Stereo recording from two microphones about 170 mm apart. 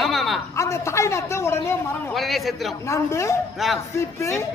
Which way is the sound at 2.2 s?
Centre (ahead or behind).